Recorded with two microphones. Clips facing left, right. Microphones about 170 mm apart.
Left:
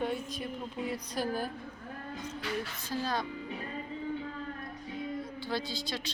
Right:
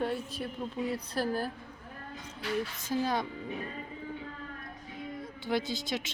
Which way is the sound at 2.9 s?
20° right (ahead or behind).